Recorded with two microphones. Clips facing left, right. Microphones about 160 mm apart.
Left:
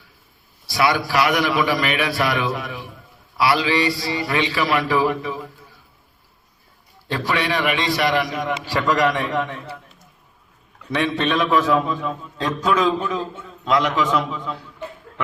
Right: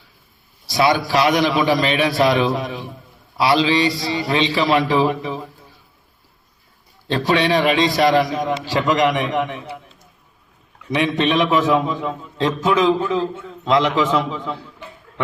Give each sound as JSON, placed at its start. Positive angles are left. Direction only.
{"t": 0.7, "sound": "a man's voice", "side_deg": -25}
{"t": 7.1, "sound": "a man's voice", "side_deg": -25}
{"t": 8.6, "sound": "a man's voice", "side_deg": -20}
{"t": 11.2, "sound": "a man's voice", "side_deg": -20}